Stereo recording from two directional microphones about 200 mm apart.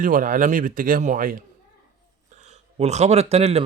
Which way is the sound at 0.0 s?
40° right (ahead or behind).